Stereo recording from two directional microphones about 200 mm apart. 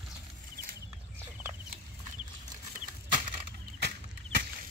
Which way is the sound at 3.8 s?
55° right (ahead or behind).